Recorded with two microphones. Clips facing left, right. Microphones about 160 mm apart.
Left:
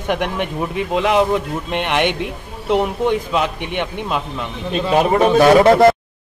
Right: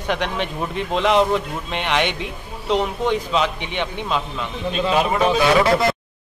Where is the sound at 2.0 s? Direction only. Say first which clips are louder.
Left 5 dB; 55° left (ahead or behind).